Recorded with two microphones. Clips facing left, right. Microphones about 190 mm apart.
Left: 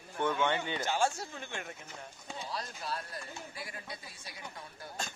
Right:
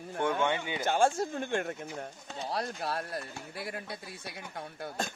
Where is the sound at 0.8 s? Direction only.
50° right (ahead or behind).